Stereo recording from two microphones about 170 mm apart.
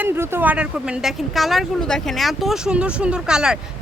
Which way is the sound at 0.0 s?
15° right (ahead or behind).